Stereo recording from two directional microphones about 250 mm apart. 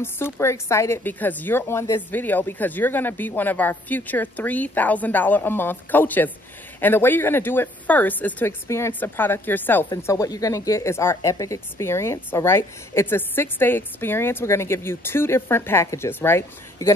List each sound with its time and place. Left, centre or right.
0.0 s speech: centre